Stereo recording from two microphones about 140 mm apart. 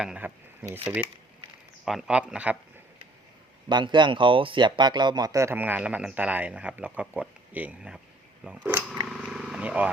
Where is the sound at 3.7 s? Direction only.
35° right (ahead or behind).